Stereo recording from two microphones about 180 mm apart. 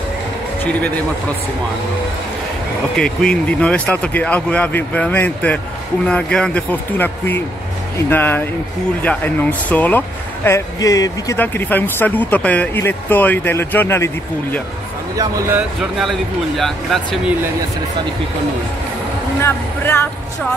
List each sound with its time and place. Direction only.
3.0 s speech: 5° left (ahead or behind)
15.1 s speech: 20° right (ahead or behind)
16.0 s speech: centre (ahead or behind)
19.4 s speech: 15° left (ahead or behind)